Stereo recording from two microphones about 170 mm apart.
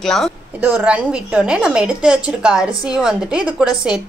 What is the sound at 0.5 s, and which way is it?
A woman's voice, 10° right (ahead or behind).